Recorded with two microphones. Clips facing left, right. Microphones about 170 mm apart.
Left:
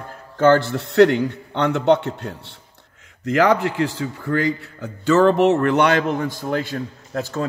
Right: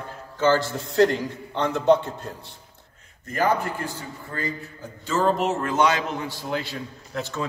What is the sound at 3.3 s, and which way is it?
A man's voice, 90° left.